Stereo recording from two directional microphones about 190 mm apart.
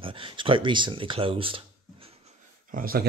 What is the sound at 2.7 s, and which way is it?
Speech, 50° right (ahead or behind).